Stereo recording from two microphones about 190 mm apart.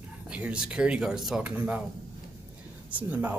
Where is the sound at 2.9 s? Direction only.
10° right (ahead or behind).